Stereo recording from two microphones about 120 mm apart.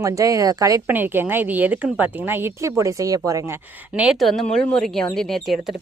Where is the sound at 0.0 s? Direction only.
25° right (ahead or behind).